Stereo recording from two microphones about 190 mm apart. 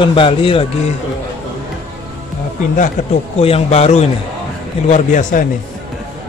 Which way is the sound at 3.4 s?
30° left (ahead or behind).